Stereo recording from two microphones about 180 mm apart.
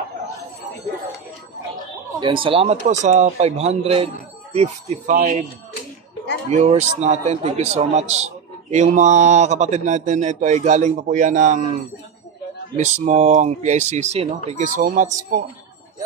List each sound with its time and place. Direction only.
2.1 s a man's voice: 25° right (ahead or behind); by 5.3 s 45° right (ahead or behind)
6.5 s a man's voice: 40° right (ahead or behind)
12.7 s a man's voice: 40° right (ahead or behind)